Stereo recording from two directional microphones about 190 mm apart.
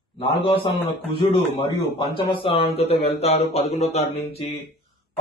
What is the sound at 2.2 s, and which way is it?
Speech, 25° left (ahead or behind).